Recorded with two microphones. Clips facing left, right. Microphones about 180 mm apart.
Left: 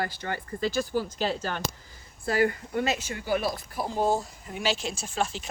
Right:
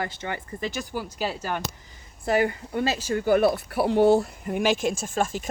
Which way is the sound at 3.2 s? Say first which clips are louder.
Right 9 dB; 55° right (ahead or behind).